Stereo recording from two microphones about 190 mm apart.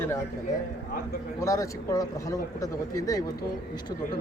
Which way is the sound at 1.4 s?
15° left (ahead or behind).